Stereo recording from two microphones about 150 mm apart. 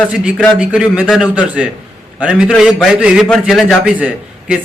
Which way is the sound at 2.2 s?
5° right (ahead or behind).